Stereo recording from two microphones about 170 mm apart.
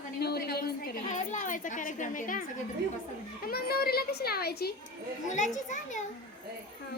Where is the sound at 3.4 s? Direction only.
65° left (ahead or behind).